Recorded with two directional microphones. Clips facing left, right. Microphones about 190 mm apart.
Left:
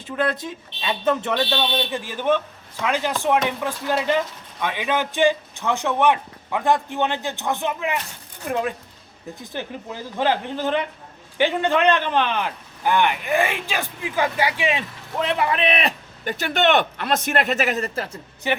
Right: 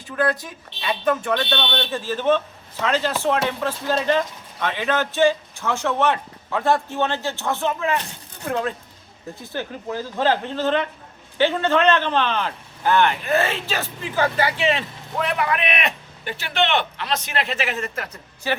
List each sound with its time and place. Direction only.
0.0 s speech: 25° left (ahead or behind)
1.5 s a man's voice: 10° left (ahead or behind)
15.3 s a man's voice: 25° left (ahead or behind)
18.5 s speech: 20° left (ahead or behind)